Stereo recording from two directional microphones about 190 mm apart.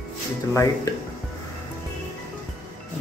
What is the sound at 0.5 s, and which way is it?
Speech, 15° left (ahead or behind).